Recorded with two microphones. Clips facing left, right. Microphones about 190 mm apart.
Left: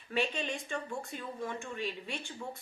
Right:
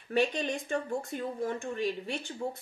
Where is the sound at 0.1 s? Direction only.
40° right (ahead or behind).